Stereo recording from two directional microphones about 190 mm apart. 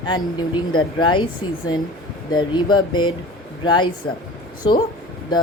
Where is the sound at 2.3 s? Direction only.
25° left (ahead or behind).